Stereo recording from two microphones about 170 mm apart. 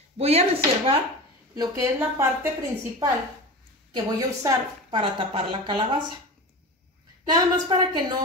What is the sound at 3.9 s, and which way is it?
A woman's voice, 30° right (ahead or behind).